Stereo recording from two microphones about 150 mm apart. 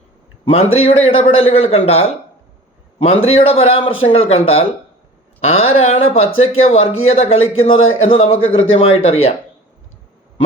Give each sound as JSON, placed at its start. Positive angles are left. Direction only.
{"t": 0.4, "sound": "a man's voice", "side_deg": 40}